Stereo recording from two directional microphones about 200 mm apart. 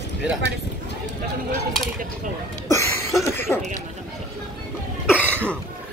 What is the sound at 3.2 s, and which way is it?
Cough, 10° left (ahead or behind).